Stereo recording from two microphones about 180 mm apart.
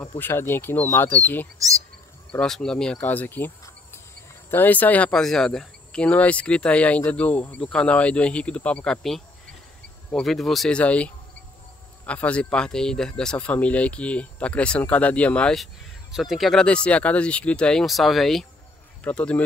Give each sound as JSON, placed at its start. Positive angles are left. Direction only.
{"t": 0.2, "sound": "speech", "side_deg": 15}
{"t": 1.6, "sound": "speech", "side_deg": -20}
{"t": 2.3, "sound": "speech", "side_deg": 5}